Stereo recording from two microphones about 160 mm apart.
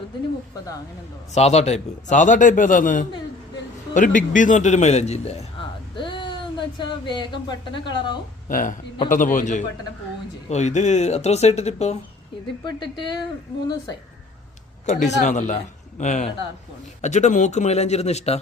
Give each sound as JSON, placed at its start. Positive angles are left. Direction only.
{"t": 1.3, "sound": "a man's voice", "side_deg": 40}
{"t": 8.4, "sound": "a man's voice", "side_deg": 60}
{"t": 14.8, "sound": "a man's voice", "side_deg": 50}